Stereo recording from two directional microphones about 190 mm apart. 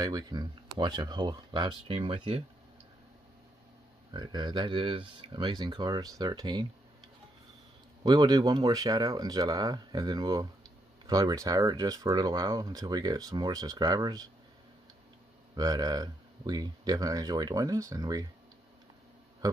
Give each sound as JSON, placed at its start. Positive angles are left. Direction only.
{"t": 0.0, "sound": "speech", "side_deg": -20}
{"t": 4.1, "sound": "speech", "side_deg": -20}
{"t": 8.0, "sound": "speech", "side_deg": -20}
{"t": 15.5, "sound": "speech", "side_deg": -20}